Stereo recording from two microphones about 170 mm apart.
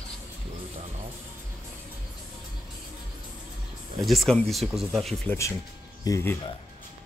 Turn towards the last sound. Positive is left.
turn(degrees=15)  # may be behind; listen again after turning